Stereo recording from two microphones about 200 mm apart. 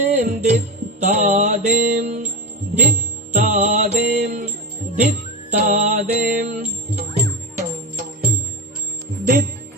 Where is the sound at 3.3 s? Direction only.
40° right (ahead or behind).